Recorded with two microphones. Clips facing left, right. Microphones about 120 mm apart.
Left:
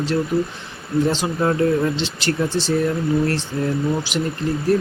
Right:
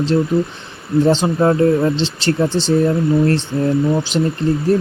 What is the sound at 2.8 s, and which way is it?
Speech, 30° right (ahead or behind).